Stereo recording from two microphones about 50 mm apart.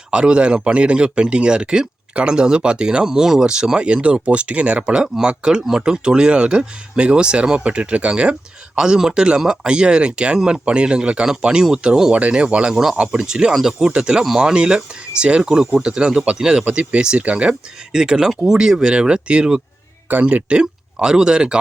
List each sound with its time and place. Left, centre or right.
0.1 s speech: right